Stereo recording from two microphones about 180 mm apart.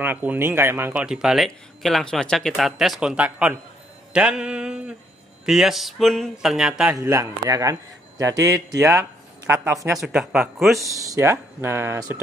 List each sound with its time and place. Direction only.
0.0 s speech: 10° right (ahead or behind)
6.9 s speech: 20° right (ahead or behind)
9.9 s speech: 5° right (ahead or behind)
10.8 s speech: 15° right (ahead or behind)